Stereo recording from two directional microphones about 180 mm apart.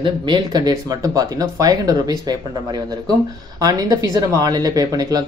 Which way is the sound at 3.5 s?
20° right (ahead or behind).